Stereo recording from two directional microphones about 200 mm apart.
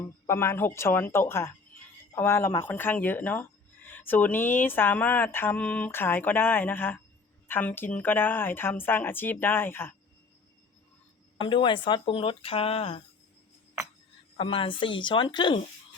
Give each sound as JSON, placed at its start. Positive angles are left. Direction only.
{"t": 0.0, "sound": "speech", "side_deg": 10}
{"t": 11.3, "sound": "speech", "side_deg": 25}
{"t": 14.3, "sound": "speech", "side_deg": 25}